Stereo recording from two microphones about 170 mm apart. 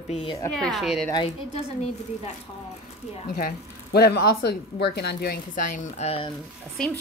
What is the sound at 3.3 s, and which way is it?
Speech, 60° left (ahead or behind).